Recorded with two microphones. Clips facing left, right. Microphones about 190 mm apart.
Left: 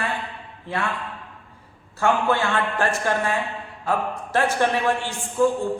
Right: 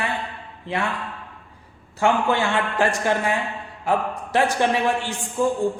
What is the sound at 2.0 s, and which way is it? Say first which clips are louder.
A man's voice: right 1 dB; 15° right (ahead or behind).